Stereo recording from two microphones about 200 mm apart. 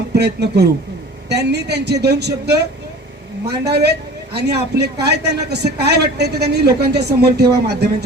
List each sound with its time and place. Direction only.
0.1 s speech: 55° right (ahead or behind)